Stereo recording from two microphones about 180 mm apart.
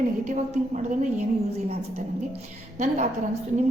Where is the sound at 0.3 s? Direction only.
40° right (ahead or behind).